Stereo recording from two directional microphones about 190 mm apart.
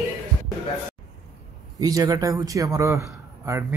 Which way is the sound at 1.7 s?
20° right (ahead or behind).